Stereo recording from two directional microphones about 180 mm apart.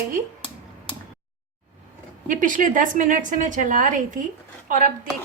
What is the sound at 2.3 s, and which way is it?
A woman's voice, 45° right (ahead or behind).